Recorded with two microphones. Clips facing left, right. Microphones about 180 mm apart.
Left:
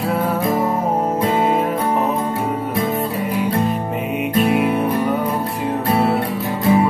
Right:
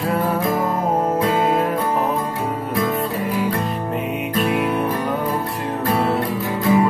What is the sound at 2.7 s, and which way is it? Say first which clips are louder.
Music: right 2 dB; 25° left (ahead or behind).